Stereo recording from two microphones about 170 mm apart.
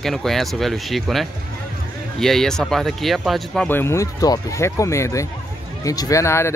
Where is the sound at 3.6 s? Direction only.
15° left (ahead or behind).